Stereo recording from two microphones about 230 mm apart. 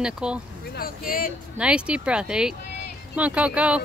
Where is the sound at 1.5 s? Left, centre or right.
Centre.